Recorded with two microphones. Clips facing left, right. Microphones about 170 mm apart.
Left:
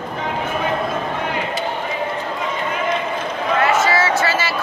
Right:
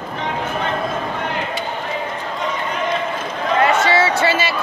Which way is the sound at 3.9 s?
30° right (ahead or behind).